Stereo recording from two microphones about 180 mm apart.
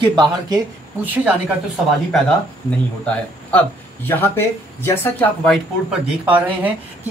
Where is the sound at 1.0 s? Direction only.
10° right (ahead or behind).